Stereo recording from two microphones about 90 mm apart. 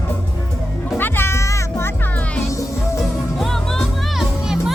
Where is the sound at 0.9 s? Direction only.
25° left (ahead or behind).